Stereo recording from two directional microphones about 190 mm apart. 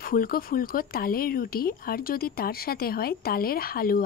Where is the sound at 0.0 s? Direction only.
50° left (ahead or behind).